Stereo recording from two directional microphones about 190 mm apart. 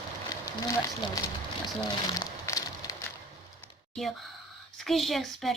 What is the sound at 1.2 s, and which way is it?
Speech, 15° left (ahead or behind).